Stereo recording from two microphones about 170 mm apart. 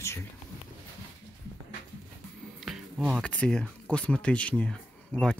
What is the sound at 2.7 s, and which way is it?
Music, 5° right (ahead or behind).